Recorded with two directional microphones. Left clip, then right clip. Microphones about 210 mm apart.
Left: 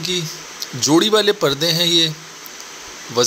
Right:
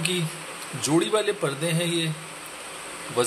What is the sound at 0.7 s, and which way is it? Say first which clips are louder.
Speech: left 9 dB; 25° left (ahead or behind).